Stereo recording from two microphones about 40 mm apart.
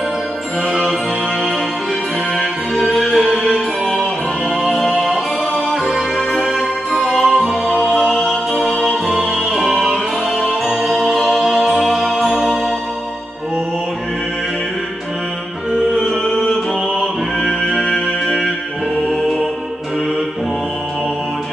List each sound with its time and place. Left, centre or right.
2.3 s music: centre
6.9 s music: centre
7.3 s music: centre
8.1 s music: centre
10.7 s music: centre
11.0 s music: centre
12.2 s music: centre
16.0 s music: centre
17.5 s music: left
18.2 s music: centre